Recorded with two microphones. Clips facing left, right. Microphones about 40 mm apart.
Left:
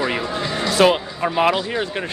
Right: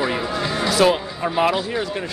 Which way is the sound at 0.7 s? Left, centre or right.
Left.